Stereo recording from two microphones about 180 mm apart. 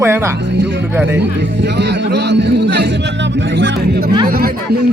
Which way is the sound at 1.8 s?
70° right (ahead or behind).